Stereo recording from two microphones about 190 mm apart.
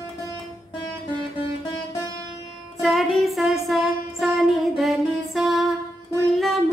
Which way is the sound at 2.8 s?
Centre (ahead or behind).